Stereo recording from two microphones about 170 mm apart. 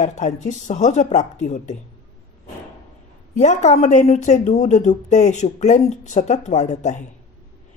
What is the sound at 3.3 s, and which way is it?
Speech, 45° left (ahead or behind).